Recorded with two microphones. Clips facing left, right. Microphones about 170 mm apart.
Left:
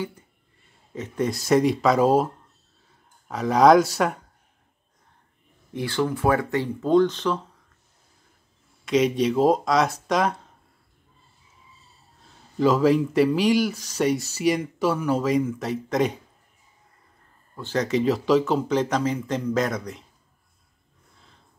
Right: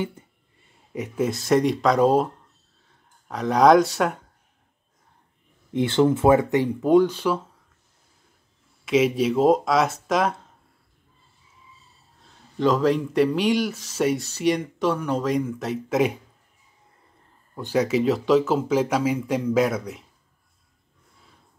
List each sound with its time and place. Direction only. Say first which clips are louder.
0.9 s speech: right 1 dB; 10° right (ahead or behind)
5.7 s speech: right 6 dB; 20° right (ahead or behind)
8.8 s speech: right 1 dB; 5° right (ahead or behind)
12.5 s speech: left 1 dB; 5° left (ahead or behind)
17.6 s speech: right 2 dB; 10° right (ahead or behind)